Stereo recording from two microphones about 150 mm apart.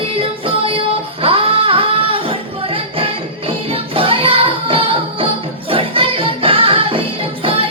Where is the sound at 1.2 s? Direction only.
40° right (ahead or behind).